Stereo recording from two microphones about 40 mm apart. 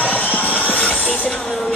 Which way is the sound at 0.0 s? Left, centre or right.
Left.